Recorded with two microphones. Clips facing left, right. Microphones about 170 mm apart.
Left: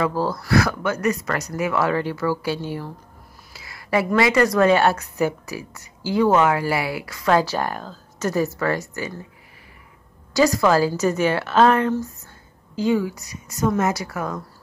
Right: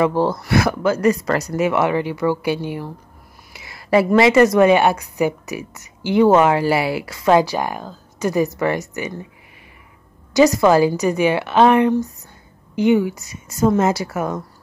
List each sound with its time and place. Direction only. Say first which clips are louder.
0.0 s a woman's voice: right 5 dB; 25° right (ahead or behind)
10.3 s a woman's voice: right 4 dB; 20° right (ahead or behind)